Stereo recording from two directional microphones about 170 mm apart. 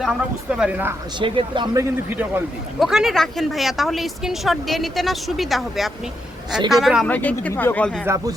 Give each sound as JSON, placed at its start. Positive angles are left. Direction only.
{"t": 0.0, "sound": "a woman's voice", "side_deg": -5}
{"t": 1.2, "sound": "a woman's voice", "side_deg": -30}
{"t": 8.0, "sound": "speech", "side_deg": -20}